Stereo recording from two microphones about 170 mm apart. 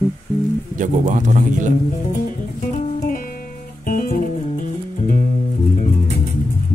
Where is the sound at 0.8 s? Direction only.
45° right (ahead or behind).